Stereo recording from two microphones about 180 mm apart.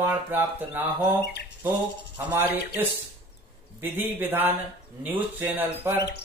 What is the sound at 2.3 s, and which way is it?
Speech, 10° right (ahead or behind).